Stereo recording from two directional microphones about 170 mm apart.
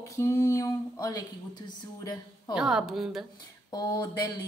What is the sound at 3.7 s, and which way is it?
Speech, 20° left (ahead or behind).